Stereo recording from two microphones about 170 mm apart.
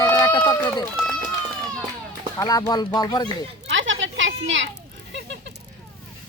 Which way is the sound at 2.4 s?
20° left (ahead or behind).